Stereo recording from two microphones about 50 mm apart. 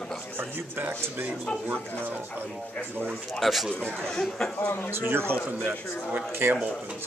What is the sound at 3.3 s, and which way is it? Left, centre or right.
Speech, centre.